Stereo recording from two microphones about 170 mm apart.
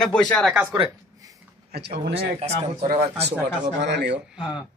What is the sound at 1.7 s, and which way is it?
Speech, 70° right (ahead or behind).